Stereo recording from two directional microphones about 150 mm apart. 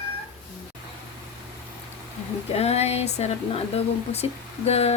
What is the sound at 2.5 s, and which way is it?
Speech, 45° left (ahead or behind).